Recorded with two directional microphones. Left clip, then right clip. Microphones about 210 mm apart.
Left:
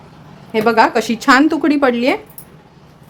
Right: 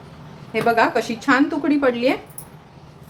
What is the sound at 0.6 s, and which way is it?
A woman's voice, 45° left (ahead or behind).